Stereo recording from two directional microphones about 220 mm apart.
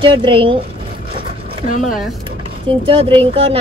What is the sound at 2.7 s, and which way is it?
Speech, 25° right (ahead or behind).